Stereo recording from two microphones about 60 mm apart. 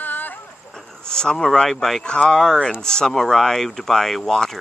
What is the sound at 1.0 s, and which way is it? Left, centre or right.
Speech, centre.